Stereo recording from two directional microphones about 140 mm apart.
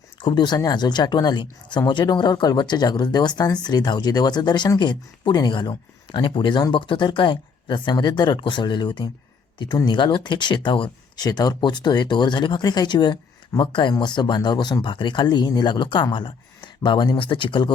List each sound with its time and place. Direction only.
0.2 s speech: 35° left (ahead or behind)